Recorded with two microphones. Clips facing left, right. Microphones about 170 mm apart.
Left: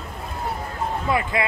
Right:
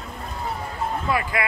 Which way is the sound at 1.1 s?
25° left (ahead or behind).